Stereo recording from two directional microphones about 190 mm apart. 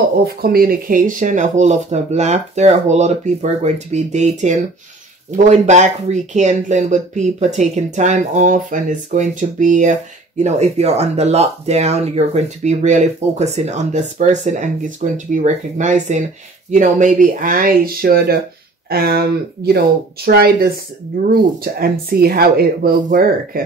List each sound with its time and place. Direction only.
0.2 s speech: 55° right (ahead or behind)